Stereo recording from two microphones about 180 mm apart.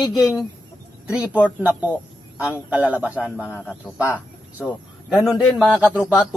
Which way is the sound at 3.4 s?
10° left (ahead or behind).